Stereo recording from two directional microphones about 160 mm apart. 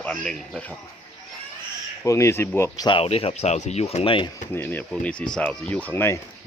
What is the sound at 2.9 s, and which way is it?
Speech, 35° left (ahead or behind).